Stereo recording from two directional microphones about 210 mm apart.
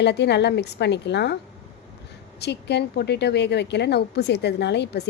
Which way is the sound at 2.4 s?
55° left (ahead or behind).